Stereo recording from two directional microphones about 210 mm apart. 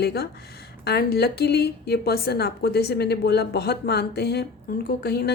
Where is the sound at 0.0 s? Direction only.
50° left (ahead or behind).